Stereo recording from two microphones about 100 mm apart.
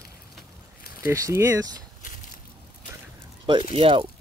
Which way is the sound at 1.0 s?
30° right (ahead or behind).